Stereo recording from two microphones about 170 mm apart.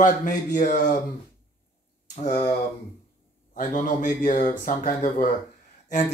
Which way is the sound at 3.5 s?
50° left (ahead or behind).